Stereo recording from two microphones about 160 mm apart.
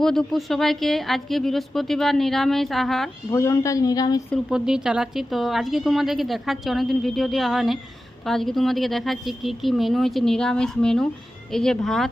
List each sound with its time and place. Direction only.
0.0 s speech: 5° left (ahead or behind)
3.3 s a woman's voice: 20° left (ahead or behind)
4.4 s speech: 5° right (ahead or behind)